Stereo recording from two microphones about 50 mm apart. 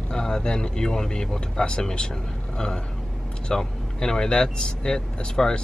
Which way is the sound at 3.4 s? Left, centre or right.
Centre.